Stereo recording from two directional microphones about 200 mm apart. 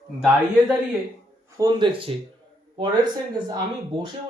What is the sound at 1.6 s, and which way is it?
Speech, 20° right (ahead or behind).